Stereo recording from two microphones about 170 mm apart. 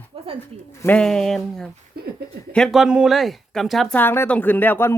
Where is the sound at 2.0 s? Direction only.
65° right (ahead or behind).